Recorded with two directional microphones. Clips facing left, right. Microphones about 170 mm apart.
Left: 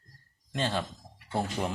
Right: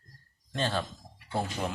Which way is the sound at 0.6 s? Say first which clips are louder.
Even; 15° left (ahead or behind).